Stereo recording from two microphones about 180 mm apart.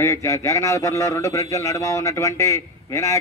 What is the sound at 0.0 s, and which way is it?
A man's voice, 15° left (ahead or behind).